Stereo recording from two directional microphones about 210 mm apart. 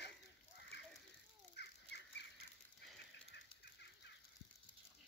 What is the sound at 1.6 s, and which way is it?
Bird, 55° left (ahead or behind).